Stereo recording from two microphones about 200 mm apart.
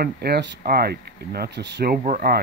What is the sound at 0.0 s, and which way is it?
Speech, 50° right (ahead or behind).